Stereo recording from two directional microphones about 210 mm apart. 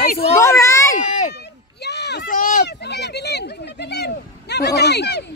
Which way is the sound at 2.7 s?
55° left (ahead or behind).